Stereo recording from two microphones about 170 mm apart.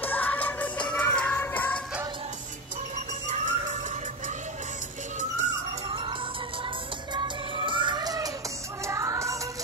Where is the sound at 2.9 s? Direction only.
45° right (ahead or behind).